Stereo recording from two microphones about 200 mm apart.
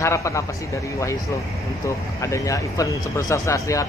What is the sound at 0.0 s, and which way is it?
Speech, 15° left (ahead or behind).